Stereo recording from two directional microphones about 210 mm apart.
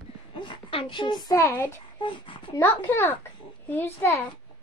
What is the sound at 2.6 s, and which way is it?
A woman's voice, 10° left (ahead or behind).